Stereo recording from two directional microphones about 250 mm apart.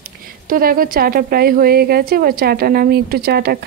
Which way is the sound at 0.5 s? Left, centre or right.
Right.